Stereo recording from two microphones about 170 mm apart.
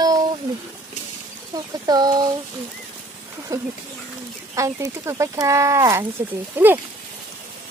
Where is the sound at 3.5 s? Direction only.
15° right (ahead or behind).